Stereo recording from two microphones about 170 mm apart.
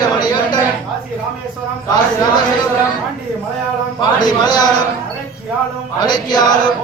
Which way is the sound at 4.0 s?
25° left (ahead or behind).